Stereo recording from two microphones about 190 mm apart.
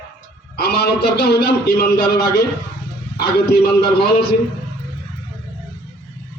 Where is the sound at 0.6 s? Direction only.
55° left (ahead or behind).